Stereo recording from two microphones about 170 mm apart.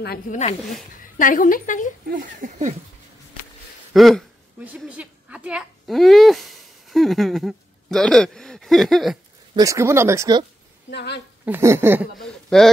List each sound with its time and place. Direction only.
0.3 s speech: 50° left (ahead or behind)
2.0 s speech: 50° right (ahead or behind)
3.9 s a woman's voice: centre (ahead or behind)
9.6 s speech: 20° right (ahead or behind)
10.9 s speech: 80° left
11.4 s speech: 15° right (ahead or behind)
12.2 s a man's voice: 5° left (ahead or behind)